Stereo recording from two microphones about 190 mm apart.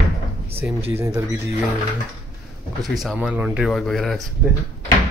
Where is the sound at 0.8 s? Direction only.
15° right (ahead or behind).